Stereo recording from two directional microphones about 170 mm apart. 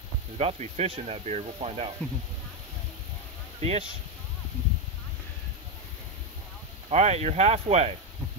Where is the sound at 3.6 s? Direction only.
40° right (ahead or behind).